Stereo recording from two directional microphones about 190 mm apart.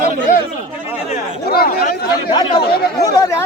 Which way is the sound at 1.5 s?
50° left (ahead or behind).